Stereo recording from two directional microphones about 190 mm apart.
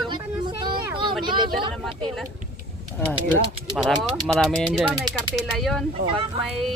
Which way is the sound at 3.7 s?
Centre (ahead or behind).